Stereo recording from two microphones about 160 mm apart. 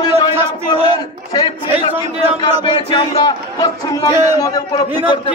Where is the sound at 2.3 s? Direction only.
30° left (ahead or behind).